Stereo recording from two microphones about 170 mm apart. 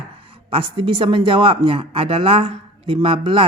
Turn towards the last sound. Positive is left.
turn(degrees=-30)  # may be behind; listen again after turning